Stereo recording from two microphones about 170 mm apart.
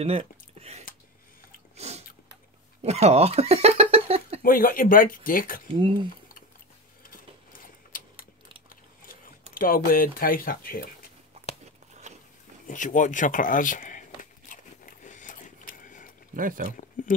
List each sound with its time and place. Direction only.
0.0 s a sound: 35° right (ahead or behind)
2.8 s speech: 40° right (ahead or behind)
4.4 s speech: 55° left (ahead or behind)
5.8 s speech: 30° right (ahead or behind)
7.9 s a sound: 55° left (ahead or behind)
9.5 s speech: 55° left (ahead or behind)
12.6 s speech: 50° left (ahead or behind)
14.5 s biting: 50° left (ahead or behind)
16.3 s speech: 55° right (ahead or behind)
16.7 s speech: 50° left (ahead or behind)